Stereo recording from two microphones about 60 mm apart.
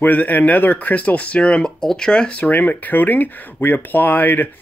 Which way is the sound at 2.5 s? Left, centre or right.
Left.